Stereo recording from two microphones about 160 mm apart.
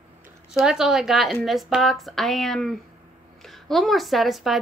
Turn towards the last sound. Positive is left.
turn(degrees=0)  # may be behind; listen again after turning